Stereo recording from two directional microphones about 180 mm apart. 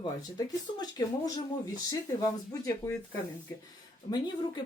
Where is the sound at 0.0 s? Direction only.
20° left (ahead or behind).